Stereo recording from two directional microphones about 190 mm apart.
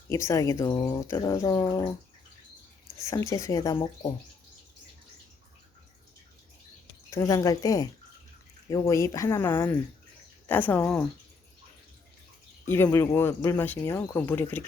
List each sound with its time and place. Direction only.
0.1 s speech: 15° left (ahead or behind)
3.1 s speech: 15° left (ahead or behind)
7.1 s speech: 15° left (ahead or behind)
12.6 s speech: 10° left (ahead or behind)